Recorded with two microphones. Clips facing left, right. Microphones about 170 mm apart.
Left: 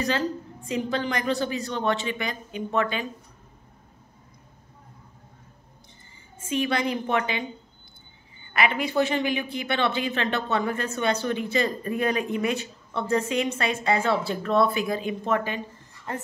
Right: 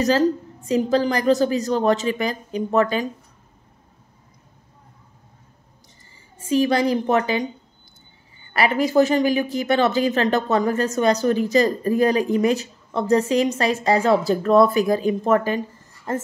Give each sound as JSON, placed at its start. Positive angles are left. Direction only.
{"t": 0.0, "sound": "speech", "side_deg": -40}
{"t": 6.4, "sound": "speech", "side_deg": -35}
{"t": 8.5, "sound": "speech", "side_deg": -40}